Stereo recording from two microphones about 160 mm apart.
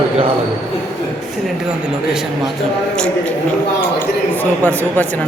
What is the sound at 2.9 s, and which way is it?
Speech, 5° left (ahead or behind).